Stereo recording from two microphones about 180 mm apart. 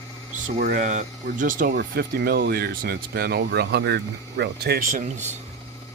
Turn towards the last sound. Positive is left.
turn(degrees=-45)  # may be behind; listen again after turning